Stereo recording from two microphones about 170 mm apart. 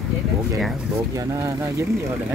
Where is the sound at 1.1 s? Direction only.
20° right (ahead or behind).